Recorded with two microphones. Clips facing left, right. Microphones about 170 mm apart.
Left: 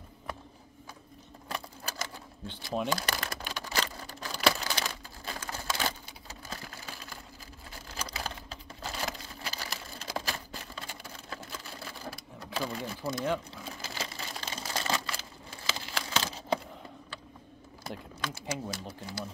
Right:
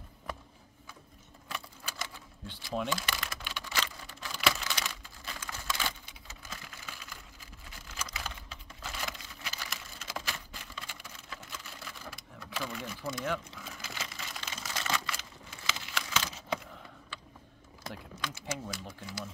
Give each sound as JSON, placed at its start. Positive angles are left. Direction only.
{"t": 1.5, "sound": "typewriter", "side_deg": 40}
{"t": 2.9, "sound": "a sound", "side_deg": 40}
{"t": 18.2, "sound": "speech", "side_deg": 35}